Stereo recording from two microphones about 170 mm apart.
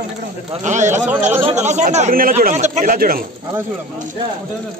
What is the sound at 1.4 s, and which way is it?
Speech, 45° right (ahead or behind).